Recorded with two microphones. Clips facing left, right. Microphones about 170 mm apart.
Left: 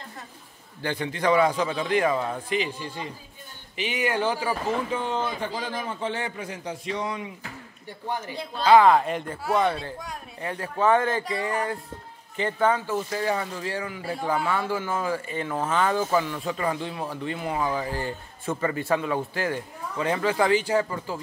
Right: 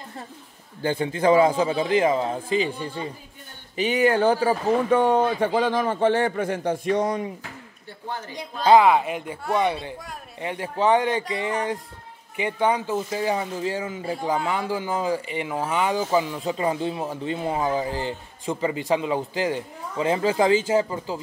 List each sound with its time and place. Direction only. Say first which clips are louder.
0.8 s speech: right 4 dB; 25° right (ahead or behind); by 4.9 s 45° right (ahead or behind)
4.9 s a man's voice: right 9 dB; 60° right (ahead or behind); by 7.3 s 40° right (ahead or behind)
8.7 s speech: even; 5° right (ahead or behind)
10.4 s speech: right 1 dB; 20° right (ahead or behind)